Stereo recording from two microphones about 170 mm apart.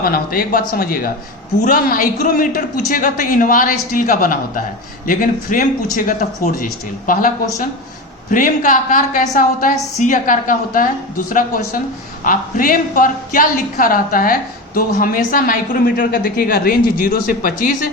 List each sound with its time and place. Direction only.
0.0 s a woman's voice: 60° left (ahead or behind)